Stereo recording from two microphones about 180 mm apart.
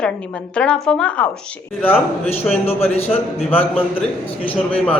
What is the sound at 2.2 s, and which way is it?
Speech, 35° left (ahead or behind).